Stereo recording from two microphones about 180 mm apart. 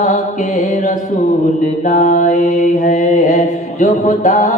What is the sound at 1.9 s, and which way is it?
Mantra, 45° left (ahead or behind).